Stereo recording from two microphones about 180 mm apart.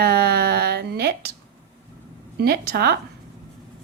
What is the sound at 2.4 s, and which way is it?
Speech, 60° right (ahead or behind).